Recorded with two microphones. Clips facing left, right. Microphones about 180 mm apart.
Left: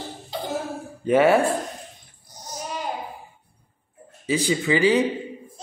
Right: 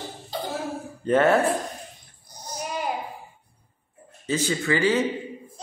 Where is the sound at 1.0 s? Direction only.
10° left (ahead or behind).